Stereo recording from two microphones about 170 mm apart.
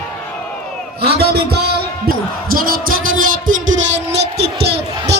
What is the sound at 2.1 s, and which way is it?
Basketball bounce, 65° right (ahead or behind).